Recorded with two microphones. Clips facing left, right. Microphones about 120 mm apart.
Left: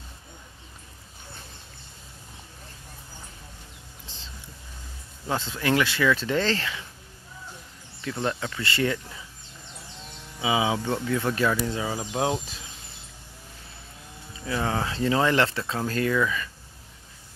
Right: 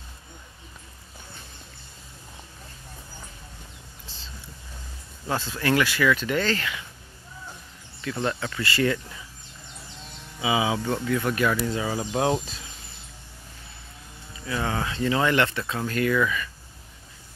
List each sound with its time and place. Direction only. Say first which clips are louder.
4.1 s whispering: left 2 dB; 20° left (ahead or behind)
5.3 s speech: right 1 dB; 20° left (ahead or behind)
8.0 s speech: right 1 dB; 15° left (ahead or behind)
10.4 s speech: even; 25° left (ahead or behind)
11.8 s speech: right 2 dB; 5° left (ahead or behind)
14.4 s speech: left 1 dB; 30° left (ahead or behind)